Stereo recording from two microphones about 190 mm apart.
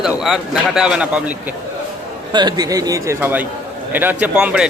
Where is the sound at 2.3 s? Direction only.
20° right (ahead or behind).